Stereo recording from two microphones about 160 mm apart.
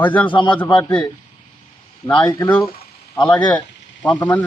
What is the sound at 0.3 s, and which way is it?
Speech, 30° left (ahead or behind).